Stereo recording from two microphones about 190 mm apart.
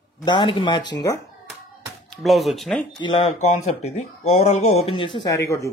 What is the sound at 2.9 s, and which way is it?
Speech, 30° left (ahead or behind).